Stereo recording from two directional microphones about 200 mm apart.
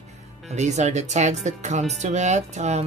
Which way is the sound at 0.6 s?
35° right (ahead or behind).